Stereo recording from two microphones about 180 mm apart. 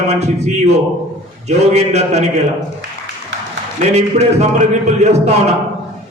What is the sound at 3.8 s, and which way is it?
A man's voice, 40° right (ahead or behind).